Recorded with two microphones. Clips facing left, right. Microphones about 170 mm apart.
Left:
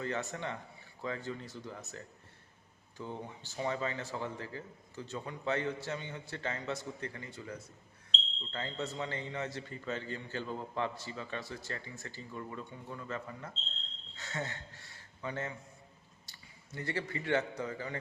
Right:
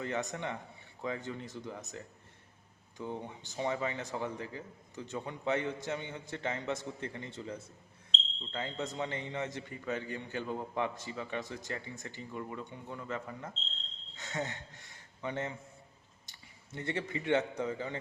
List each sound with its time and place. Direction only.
0.0 s a man's voice: 15° right (ahead or behind)